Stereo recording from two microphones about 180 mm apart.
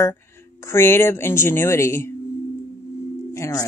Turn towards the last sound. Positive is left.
turn(degrees=15)  # may be behind; listen again after turning